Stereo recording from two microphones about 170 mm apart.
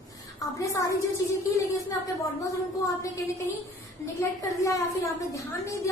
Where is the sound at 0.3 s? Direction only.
20° left (ahead or behind).